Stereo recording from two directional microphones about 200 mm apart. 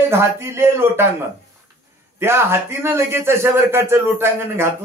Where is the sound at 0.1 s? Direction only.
15° right (ahead or behind).